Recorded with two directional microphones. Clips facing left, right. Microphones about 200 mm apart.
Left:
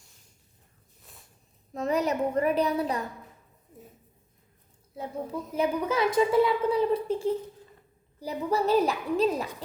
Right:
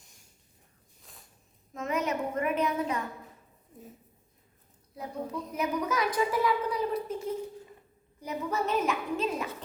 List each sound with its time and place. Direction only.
1.1 s a sound: centre (ahead or behind)
1.7 s a child's voice: 35° left (ahead or behind)
4.9 s a woman's voice: 30° left (ahead or behind)